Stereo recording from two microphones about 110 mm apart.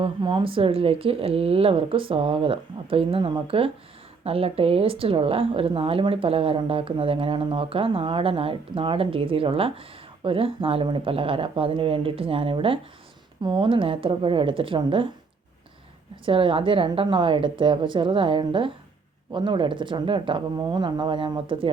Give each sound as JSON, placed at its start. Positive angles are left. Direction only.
{"t": 0.0, "sound": "speech", "side_deg": -50}
{"t": 16.2, "sound": "speech", "side_deg": -50}